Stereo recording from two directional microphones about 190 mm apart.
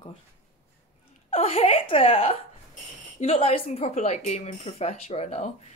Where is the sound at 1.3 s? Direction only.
30° left (ahead or behind).